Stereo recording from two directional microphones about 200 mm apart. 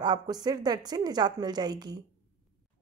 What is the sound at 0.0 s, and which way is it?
A woman's voice, 20° right (ahead or behind).